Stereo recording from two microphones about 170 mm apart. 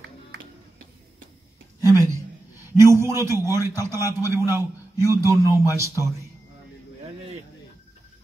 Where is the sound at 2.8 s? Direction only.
15° right (ahead or behind).